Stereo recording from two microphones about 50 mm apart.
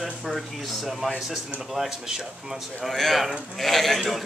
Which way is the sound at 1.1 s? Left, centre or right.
Centre.